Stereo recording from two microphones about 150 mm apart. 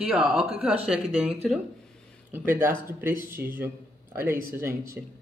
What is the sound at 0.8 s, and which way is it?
A woman's voice, 5° right (ahead or behind).